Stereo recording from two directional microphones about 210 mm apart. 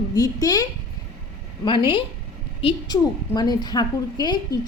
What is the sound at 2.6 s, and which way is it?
A woman's voice, 25° left (ahead or behind).